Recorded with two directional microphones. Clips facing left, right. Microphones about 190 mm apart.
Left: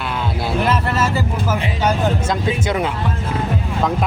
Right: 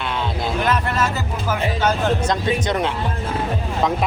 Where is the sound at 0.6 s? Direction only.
5° left (ahead or behind).